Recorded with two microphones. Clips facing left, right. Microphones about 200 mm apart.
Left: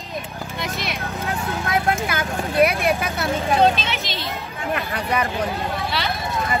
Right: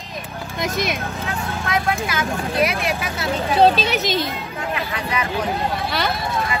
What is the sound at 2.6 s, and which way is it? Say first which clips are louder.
Speech: left 6 dB; 55° left (ahead or behind).